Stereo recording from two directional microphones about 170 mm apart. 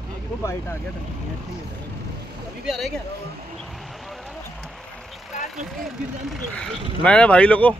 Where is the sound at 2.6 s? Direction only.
Centre (ahead or behind).